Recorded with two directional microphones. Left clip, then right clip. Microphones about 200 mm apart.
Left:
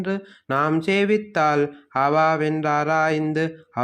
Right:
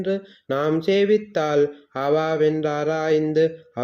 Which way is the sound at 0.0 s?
30° left (ahead or behind).